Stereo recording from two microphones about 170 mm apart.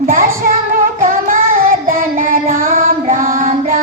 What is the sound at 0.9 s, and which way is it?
Child singing, 55° right (ahead or behind).